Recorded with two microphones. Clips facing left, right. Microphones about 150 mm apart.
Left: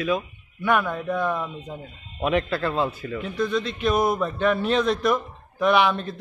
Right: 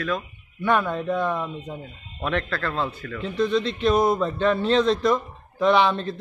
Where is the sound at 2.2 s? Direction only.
10° left (ahead or behind).